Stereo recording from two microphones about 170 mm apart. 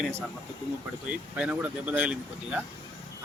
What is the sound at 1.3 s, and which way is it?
Speech, 5° right (ahead or behind).